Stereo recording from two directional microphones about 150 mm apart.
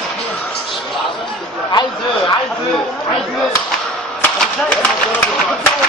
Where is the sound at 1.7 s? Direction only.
30° left (ahead or behind).